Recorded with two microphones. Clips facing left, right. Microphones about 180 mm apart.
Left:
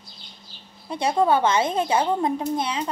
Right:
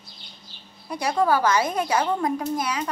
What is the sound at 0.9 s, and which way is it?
A child's voice, 25° left (ahead or behind).